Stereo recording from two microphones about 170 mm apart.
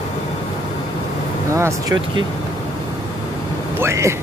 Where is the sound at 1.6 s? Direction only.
15° right (ahead or behind).